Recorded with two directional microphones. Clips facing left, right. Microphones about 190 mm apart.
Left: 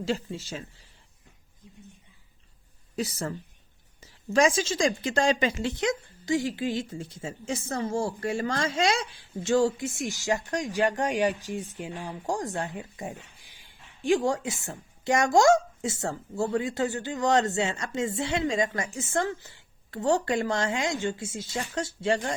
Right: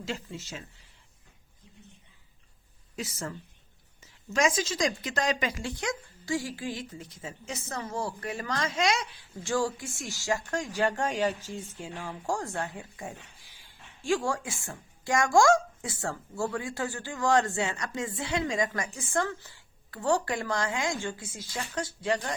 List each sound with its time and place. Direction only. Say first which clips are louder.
0.0 s speech: left 7 dB; 35° left (ahead or behind)
2.9 s speech: left 5 dB; 35° left (ahead or behind)